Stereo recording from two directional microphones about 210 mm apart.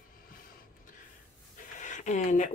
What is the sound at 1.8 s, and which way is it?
Speech, 35° left (ahead or behind).